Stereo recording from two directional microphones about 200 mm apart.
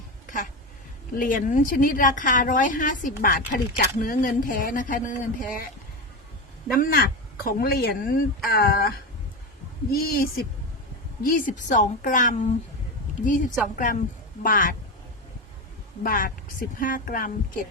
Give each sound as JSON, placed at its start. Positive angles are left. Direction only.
{"t": 1.2, "sound": "a woman's voice", "side_deg": 40}
{"t": 6.7, "sound": "a woman's voice", "side_deg": 45}
{"t": 9.9, "sound": "a woman's voice", "side_deg": 45}
{"t": 16.0, "sound": "a woman's voice", "side_deg": 45}